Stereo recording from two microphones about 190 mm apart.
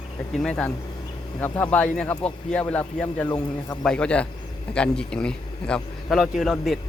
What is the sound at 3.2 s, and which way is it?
Speech, 20° left (ahead or behind).